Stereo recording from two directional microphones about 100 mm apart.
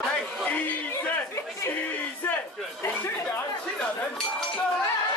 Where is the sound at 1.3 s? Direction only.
30° left (ahead or behind).